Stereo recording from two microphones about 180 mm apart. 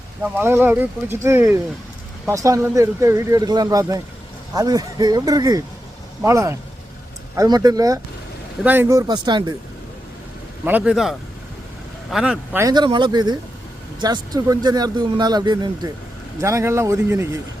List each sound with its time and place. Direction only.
0.2 s speech: 10° right (ahead or behind)
10.7 s speech: 5° right (ahead or behind)
12.6 s speech: 25° right (ahead or behind)